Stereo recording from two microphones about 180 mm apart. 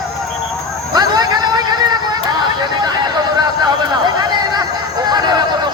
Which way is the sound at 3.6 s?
20° right (ahead or behind).